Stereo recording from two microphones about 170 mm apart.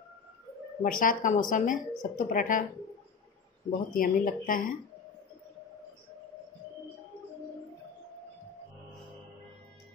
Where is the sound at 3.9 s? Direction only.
55° left (ahead or behind).